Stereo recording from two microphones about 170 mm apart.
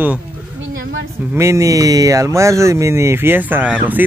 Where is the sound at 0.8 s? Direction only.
90° right.